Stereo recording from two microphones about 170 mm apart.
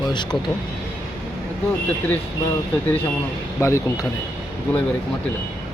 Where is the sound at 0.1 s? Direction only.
25° left (ahead or behind).